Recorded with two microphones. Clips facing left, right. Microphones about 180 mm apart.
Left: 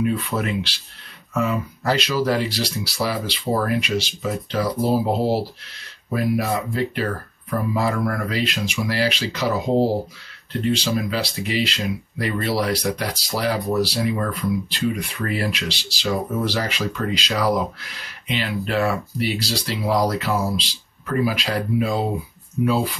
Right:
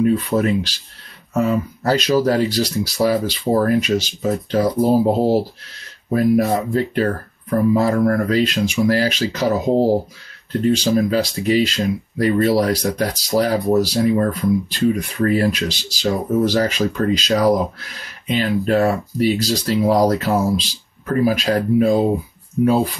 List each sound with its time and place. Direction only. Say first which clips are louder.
0.0 s speech: right 6 dB; 40° right (ahead or behind)
10.7 s speech: right 6 dB; 45° right (ahead or behind)